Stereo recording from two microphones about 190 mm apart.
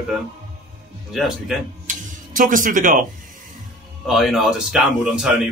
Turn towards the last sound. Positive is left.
turn(degrees=-5)  # may be behind; listen again after turning